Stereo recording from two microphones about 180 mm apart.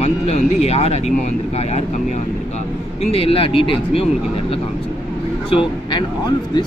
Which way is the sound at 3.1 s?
30° left (ahead or behind).